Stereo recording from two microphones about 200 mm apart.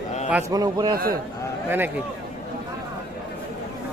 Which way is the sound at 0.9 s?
50° right (ahead or behind).